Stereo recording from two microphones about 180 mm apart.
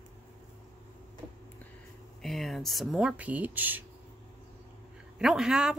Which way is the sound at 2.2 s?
Centre (ahead or behind).